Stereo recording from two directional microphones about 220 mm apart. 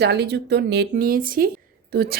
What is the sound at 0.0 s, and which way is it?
A woman's voice, 50° right (ahead or behind).